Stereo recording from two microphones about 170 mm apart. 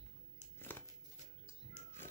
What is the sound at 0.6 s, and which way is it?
Crumpling, 10° left (ahead or behind).